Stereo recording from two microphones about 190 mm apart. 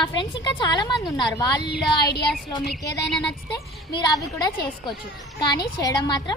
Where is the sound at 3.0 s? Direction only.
5° left (ahead or behind).